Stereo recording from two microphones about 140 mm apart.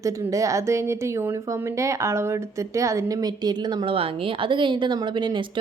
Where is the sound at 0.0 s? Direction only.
25° right (ahead or behind).